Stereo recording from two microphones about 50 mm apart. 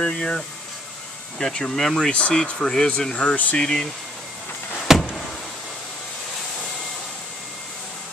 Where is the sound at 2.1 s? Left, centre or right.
Left.